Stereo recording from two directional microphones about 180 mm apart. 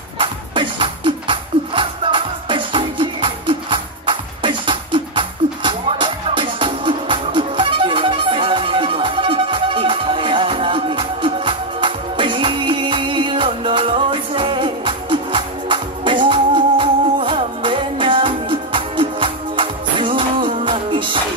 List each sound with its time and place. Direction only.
0.2 s music: 30° right (ahead or behind)